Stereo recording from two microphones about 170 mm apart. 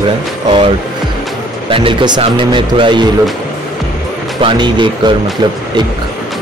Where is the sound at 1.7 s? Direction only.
30° right (ahead or behind).